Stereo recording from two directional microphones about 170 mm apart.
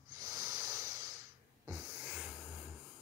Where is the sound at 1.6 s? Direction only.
10° right (ahead or behind).